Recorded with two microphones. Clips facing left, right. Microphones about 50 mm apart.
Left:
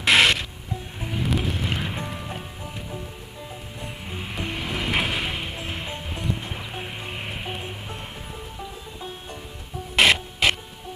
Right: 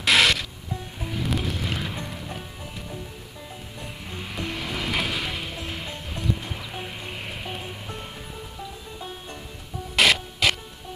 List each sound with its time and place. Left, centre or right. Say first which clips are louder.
0.0 s music: left 2 dB; centre
1.0 s train: left 2 dB; centre
1.4 s music: left 2 dB; centre
3.8 s music: left 2 dB; centre
9.9 s music: left 2 dB; centre